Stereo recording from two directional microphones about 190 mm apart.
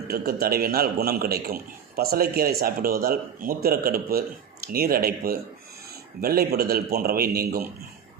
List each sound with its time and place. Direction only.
0.1 s speech: 55° right (ahead or behind)